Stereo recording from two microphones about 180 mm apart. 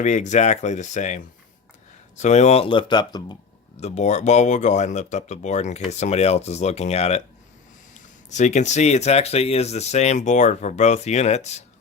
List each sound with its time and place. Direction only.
0.0 s speech: 40° left (ahead or behind); by 3.3 s 25° left (ahead or behind)
3.8 s speech: 40° left (ahead or behind)
8.3 s speech: 40° left (ahead or behind)